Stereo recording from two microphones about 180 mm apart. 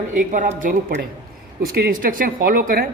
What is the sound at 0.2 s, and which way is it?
A man's voice, 45° right (ahead or behind).